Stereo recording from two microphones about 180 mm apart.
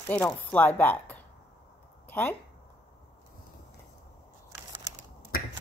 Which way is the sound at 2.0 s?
10° left (ahead or behind).